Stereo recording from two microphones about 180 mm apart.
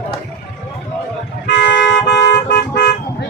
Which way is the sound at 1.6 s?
80° left.